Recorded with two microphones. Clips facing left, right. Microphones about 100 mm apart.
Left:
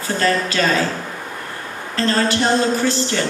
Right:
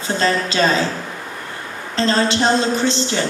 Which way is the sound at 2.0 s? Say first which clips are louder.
Right 1 dB; 20° right (ahead or behind).